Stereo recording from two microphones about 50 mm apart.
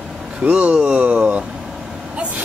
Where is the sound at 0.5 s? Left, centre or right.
Right.